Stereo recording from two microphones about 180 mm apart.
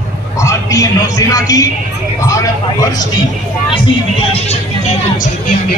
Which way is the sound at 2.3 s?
20° left (ahead or behind).